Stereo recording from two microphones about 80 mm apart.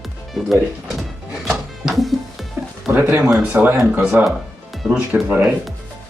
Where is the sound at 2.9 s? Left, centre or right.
Right.